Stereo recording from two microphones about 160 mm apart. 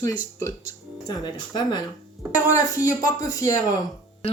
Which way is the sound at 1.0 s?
25° left (ahead or behind).